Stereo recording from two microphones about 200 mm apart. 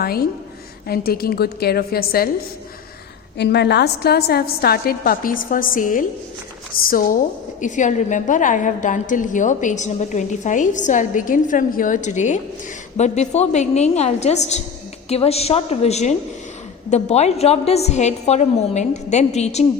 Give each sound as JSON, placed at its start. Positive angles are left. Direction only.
{"t": 0.0, "sound": "a woman's voice", "side_deg": 50}
{"t": 3.3, "sound": "a woman's voice", "side_deg": 55}